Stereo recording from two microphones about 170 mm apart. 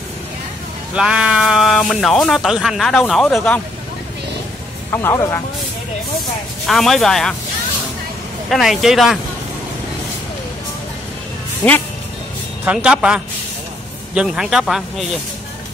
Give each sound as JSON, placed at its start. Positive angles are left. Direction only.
{"t": 0.9, "sound": "speech", "side_deg": -5}
{"t": 4.9, "sound": "speech", "side_deg": 15}
{"t": 6.7, "sound": "speech", "side_deg": 0}
{"t": 8.5, "sound": "speech", "side_deg": 0}
{"t": 11.6, "sound": "speech", "side_deg": 10}
{"t": 12.6, "sound": "speech", "side_deg": -5}